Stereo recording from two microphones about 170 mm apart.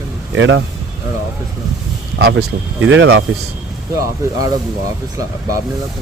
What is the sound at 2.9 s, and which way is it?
Speech, 90° right.